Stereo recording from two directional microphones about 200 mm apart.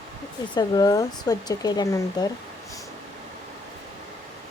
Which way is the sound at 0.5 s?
20° left (ahead or behind).